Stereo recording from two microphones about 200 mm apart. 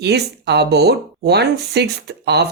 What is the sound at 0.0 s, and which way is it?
Speech, 55° right (ahead or behind).